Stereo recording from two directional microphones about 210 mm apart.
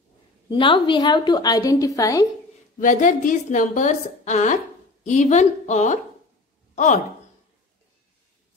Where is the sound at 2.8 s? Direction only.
40° left (ahead or behind).